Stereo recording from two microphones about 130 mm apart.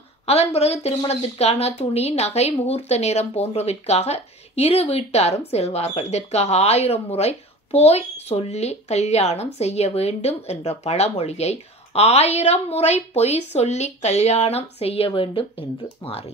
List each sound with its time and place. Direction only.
0.3 s a woman's voice: 55° left (ahead or behind)